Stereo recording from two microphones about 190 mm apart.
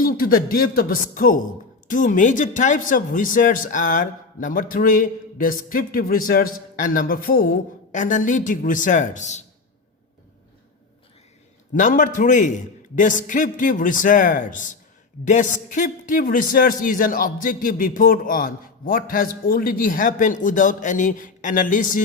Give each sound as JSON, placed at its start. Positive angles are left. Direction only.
{"t": 0.0, "sound": "speech", "side_deg": 50}
{"t": 11.7, "sound": "speech", "side_deg": 45}